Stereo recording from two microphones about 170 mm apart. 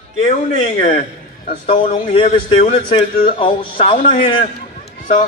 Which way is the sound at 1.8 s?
35° left (ahead or behind).